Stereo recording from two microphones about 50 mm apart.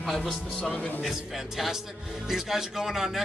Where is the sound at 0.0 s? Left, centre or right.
Centre.